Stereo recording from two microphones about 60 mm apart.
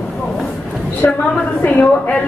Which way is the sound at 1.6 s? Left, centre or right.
Left.